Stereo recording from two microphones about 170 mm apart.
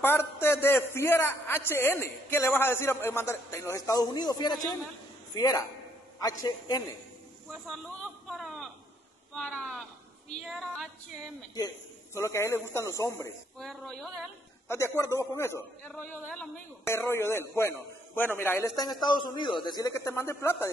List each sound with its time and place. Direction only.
0.0 s a man's voice: 15° left (ahead or behind)
8.3 s a sound: centre (ahead or behind)
9.3 s speech: 5° left (ahead or behind)
11.5 s a man's voice: 20° left (ahead or behind)
13.6 s speech: 5° left (ahead or behind)
14.7 s a man's voice: 15° left (ahead or behind)
19.9 s a man's voice: 15° left (ahead or behind)